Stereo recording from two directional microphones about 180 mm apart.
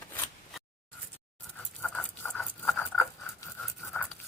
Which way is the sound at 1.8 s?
5° left (ahead or behind).